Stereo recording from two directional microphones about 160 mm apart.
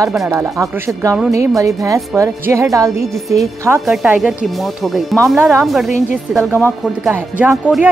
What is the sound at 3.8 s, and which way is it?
Speech, centre (ahead or behind).